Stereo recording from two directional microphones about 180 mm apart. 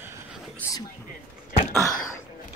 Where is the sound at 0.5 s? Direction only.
15° left (ahead or behind).